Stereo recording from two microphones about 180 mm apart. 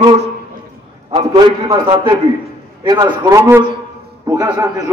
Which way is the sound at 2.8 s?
20° right (ahead or behind).